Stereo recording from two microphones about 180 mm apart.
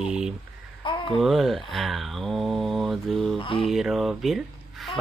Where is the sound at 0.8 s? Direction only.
25° left (ahead or behind).